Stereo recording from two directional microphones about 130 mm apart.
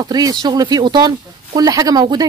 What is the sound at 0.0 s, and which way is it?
Speech, 30° right (ahead or behind).